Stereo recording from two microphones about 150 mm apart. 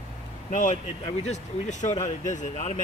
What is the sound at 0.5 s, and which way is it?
Speech, 55° left (ahead or behind).